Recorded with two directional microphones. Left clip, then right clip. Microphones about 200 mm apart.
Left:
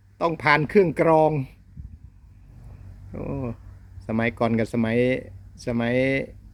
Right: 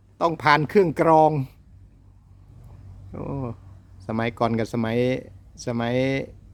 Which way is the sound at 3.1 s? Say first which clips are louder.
Left 1 dB; 10° right (ahead or behind).